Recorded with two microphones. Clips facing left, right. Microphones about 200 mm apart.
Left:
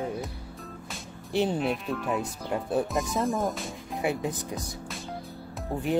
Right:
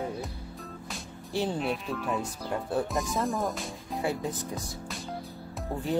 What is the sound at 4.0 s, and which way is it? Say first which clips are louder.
Speech: left 2 dB; 20° left (ahead or behind).